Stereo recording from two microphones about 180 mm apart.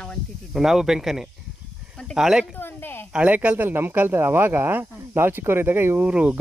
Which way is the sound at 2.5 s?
10° left (ahead or behind).